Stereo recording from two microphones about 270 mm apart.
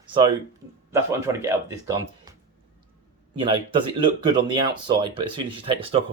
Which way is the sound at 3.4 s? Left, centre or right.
Centre.